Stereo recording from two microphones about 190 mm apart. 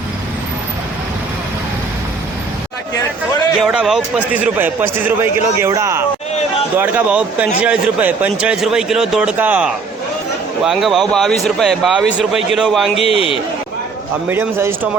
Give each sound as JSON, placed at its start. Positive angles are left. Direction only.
{"t": 3.6, "sound": "a man's voice", "side_deg": -5}
{"t": 13.0, "sound": "a man's voice", "side_deg": 30}
{"t": 14.3, "sound": "a man's voice", "side_deg": -10}